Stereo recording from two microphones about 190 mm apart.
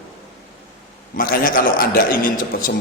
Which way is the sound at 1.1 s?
50° left (ahead or behind).